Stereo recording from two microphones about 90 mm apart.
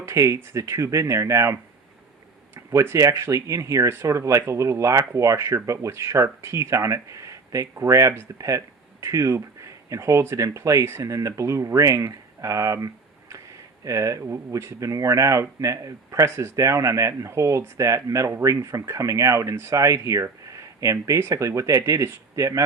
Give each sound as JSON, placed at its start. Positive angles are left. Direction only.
{"t": 0.0, "sound": "speech", "side_deg": -35}
{"t": 2.6, "sound": "speech", "side_deg": -30}